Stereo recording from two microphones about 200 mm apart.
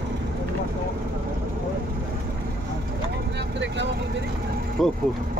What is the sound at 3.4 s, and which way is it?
Vehicle, 60° right (ahead or behind).